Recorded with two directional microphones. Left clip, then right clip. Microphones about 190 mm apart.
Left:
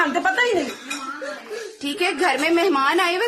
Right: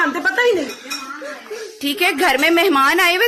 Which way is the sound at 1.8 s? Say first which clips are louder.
Right 5 dB; 25° right (ahead or behind).